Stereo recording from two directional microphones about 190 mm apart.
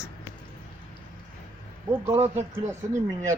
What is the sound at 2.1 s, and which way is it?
Speech, 35° right (ahead or behind).